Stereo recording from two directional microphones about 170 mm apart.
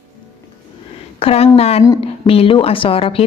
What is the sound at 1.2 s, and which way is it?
A woman's voice, 35° left (ahead or behind).